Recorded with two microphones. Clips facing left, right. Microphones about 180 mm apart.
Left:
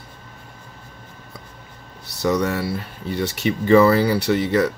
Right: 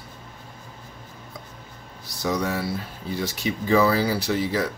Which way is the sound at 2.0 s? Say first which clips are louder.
Left 5 dB; 65° left (ahead or behind).